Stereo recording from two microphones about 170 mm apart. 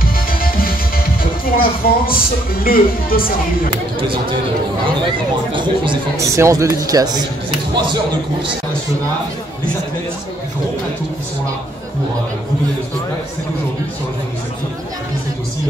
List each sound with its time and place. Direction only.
0.0 s music: 60° left (ahead or behind)
1.4 s speech: 60° left (ahead or behind)
5.0 s speech: 30° right (ahead or behind)
6.1 s speech: 20° right (ahead or behind)